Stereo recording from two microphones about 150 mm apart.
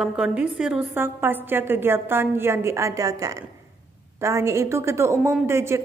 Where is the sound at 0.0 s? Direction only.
5° right (ahead or behind).